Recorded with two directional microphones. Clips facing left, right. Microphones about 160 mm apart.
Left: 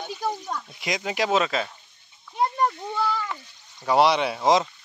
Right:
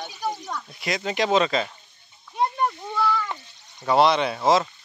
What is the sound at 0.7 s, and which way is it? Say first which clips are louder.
Speech: right 2 dB; 15° left (ahead or behind).